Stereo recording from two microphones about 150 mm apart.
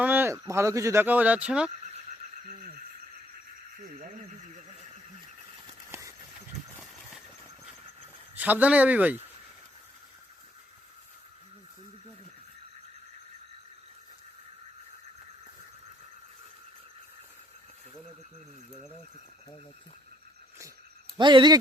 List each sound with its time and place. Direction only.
0.0 s speech: 15° right (ahead or behind)
5.9 s vehicle: 20° right (ahead or behind)
8.4 s speech: 10° right (ahead or behind)
21.2 s speech: 30° right (ahead or behind)